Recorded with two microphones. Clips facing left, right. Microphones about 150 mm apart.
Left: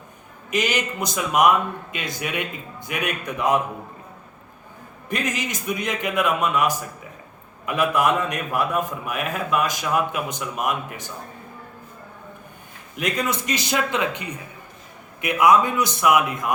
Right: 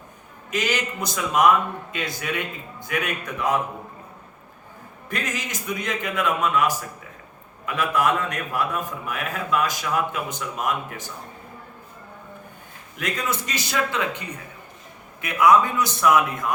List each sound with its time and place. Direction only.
0.5 s a man's voice: 15° left (ahead or behind)
5.0 s a man's voice: 15° left (ahead or behind)
13.0 s a man's voice: 15° left (ahead or behind)